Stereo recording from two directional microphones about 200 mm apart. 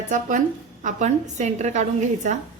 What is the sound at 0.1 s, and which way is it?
A woman's voice, 40° right (ahead or behind).